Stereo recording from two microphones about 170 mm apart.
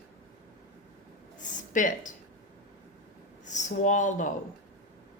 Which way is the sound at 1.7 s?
50° left (ahead or behind).